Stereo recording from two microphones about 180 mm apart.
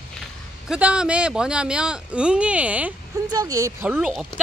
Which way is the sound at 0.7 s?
5° right (ahead or behind).